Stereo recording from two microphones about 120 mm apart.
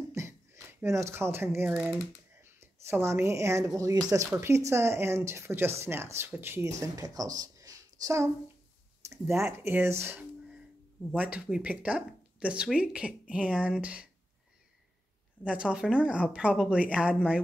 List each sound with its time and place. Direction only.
0.1 s a sound: 20° right (ahead or behind)
1.7 s speech: 10° right (ahead or behind)
2.4 s speech: 20° right (ahead or behind)
6.8 s speech: 30° right (ahead or behind); by 14.0 s 10° right (ahead or behind)
15.4 s speech: 10° right (ahead or behind)